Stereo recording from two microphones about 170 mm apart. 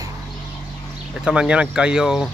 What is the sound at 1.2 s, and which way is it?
Speech, 5° right (ahead or behind).